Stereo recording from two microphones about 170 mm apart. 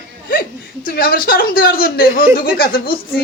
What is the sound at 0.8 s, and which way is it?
Speech, 60° left (ahead or behind).